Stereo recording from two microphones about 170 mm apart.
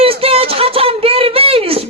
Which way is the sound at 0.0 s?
35° right (ahead or behind).